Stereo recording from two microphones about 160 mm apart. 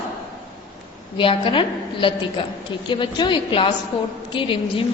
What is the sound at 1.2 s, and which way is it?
A woman's voice, 35° left (ahead or behind).